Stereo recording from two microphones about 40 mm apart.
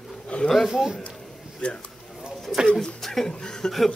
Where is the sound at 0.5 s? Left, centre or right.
Centre.